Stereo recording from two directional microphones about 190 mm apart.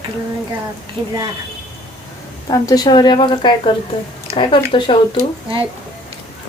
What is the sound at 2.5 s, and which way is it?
A woman's voice, 20° left (ahead or behind).